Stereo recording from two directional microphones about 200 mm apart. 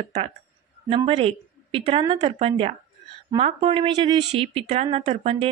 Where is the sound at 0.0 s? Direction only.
30° right (ahead or behind).